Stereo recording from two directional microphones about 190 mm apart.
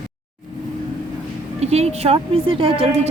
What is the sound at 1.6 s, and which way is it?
Speech, 35° right (ahead or behind).